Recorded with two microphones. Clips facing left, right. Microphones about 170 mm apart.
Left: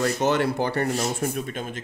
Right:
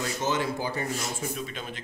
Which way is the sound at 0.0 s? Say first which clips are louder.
Left 6 dB; 65° left (ahead or behind).